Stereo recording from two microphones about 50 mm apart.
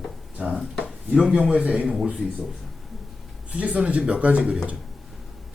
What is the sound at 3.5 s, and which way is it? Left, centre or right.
Speech, right.